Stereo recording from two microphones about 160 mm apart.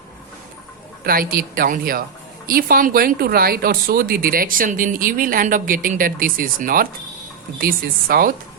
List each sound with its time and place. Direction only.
1.0 s speech: 65° right (ahead or behind)